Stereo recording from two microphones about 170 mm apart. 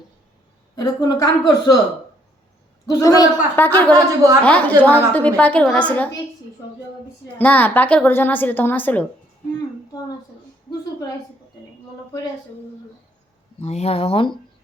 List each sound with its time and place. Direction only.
0.8 s a woman's voice: 25° left (ahead or behind)
2.8 s a woman's voice: 20° left (ahead or behind)
3.9 s a woman's voice: 20° right (ahead or behind)
4.4 s a woman's voice: 10° left (ahead or behind)
7.3 s a woman's voice: 10° left (ahead or behind)
13.6 s speech: 40° left (ahead or behind)